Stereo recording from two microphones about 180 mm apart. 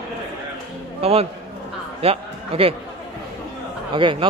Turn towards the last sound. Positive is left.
turn(degrees=-30)  # may be behind; listen again after turning